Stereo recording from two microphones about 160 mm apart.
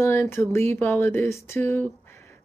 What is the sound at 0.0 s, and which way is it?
A woman's voice, 15° left (ahead or behind).